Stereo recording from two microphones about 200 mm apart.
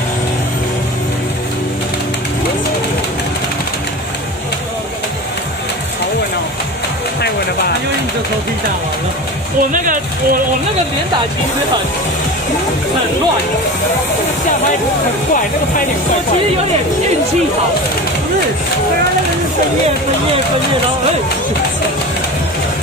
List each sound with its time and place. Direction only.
9.6 s speech: 45° right (ahead or behind)